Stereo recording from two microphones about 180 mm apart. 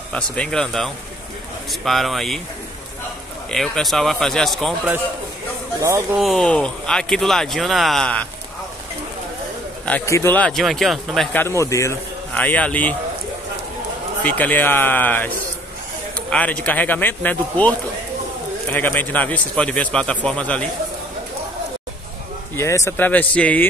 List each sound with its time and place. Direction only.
0.1 s speech: 5° left (ahead or behind)
3.4 s speech: centre (ahead or behind)
5.8 s speech: 15° right (ahead or behind)
6.1 s speech: centre (ahead or behind)
9.8 s speech: 10° left (ahead or behind)
11.3 s a man's voice: 15° left (ahead or behind)
14.2 s a man's voice: 10° left (ahead or behind)
22.6 s a man's voice: 15° left (ahead or behind)